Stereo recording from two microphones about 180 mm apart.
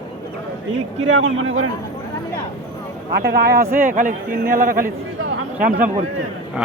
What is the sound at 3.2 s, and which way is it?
A man's voice, 65° right (ahead or behind).